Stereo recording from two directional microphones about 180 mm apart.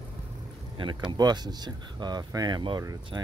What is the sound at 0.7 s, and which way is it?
Speech, 25° right (ahead or behind).